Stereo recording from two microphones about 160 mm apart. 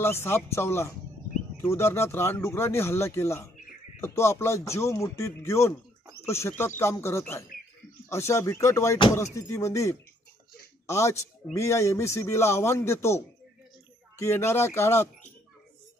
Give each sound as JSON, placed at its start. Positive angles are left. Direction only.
{"t": 0.0, "sound": "speech", "side_deg": 15}